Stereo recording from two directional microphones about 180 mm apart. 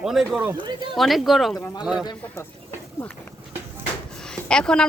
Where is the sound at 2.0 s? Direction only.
25° left (ahead or behind).